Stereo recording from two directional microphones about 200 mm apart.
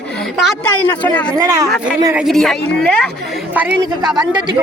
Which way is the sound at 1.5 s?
15° right (ahead or behind).